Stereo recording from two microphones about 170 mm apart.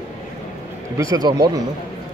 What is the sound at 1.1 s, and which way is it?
Speech, 25° right (ahead or behind).